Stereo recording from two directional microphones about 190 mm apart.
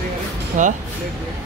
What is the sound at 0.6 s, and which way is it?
Speech, 40° right (ahead or behind).